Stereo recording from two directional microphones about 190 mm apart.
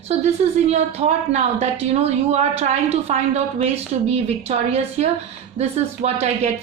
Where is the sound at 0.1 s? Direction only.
35° right (ahead or behind).